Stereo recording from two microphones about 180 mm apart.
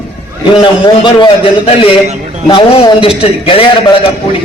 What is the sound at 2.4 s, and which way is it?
A man's voice, 30° left (ahead or behind).